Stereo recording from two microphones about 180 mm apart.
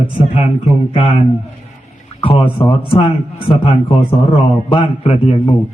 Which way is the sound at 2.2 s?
30° left (ahead or behind).